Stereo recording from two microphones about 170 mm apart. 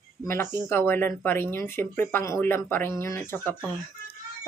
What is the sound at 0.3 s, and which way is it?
Speech, 15° left (ahead or behind).